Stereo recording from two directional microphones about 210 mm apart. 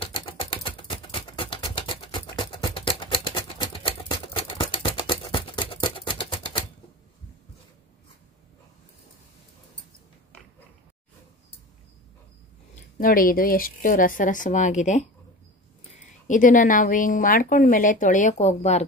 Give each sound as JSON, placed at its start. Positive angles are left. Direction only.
{"t": 0.0, "sound": "a sound", "side_deg": 25}
{"t": 13.0, "sound": "a woman's voice", "side_deg": 40}
{"t": 16.3, "sound": "a woman's voice", "side_deg": 40}